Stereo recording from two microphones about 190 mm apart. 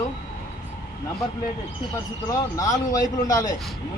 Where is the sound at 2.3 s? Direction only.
20° left (ahead or behind).